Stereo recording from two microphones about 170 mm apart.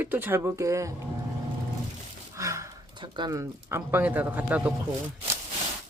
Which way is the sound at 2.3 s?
20° right (ahead or behind).